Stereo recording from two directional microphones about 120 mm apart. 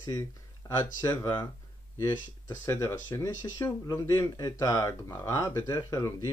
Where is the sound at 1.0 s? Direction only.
25° left (ahead or behind).